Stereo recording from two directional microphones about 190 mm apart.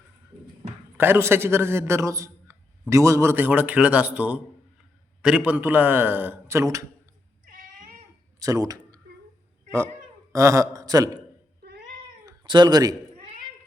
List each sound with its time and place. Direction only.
0.9 s a man's voice: 10° right (ahead or behind)
7.4 s cat: 45° right (ahead or behind)
8.4 s speech: 20° right (ahead or behind)
10.3 s a man's voice: 15° right (ahead or behind)
12.2 s speech: 20° right (ahead or behind)